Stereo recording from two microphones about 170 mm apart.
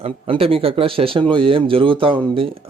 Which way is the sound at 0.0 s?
35° right (ahead or behind).